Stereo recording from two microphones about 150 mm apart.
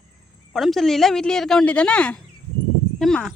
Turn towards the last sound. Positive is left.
turn(degrees=5)  # may be behind; listen again after turning